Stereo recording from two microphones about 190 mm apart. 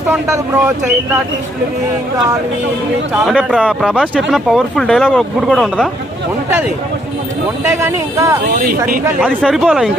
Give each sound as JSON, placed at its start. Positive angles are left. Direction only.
{"t": 0.1, "sound": "speech", "side_deg": -10}
{"t": 3.1, "sound": "speech", "side_deg": -5}
{"t": 7.7, "sound": "speech", "side_deg": -15}
{"t": 8.5, "sound": "speech", "side_deg": -50}
{"t": 9.0, "sound": "speech", "side_deg": -10}